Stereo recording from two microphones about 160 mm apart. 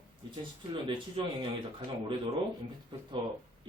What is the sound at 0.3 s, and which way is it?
Speech, 35° right (ahead or behind).